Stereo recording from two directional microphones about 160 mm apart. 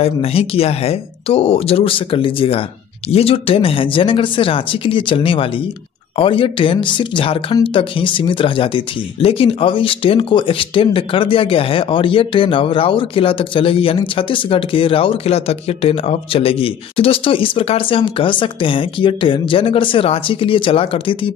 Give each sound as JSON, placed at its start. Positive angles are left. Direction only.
{"t": 0.0, "sound": "speech", "side_deg": 40}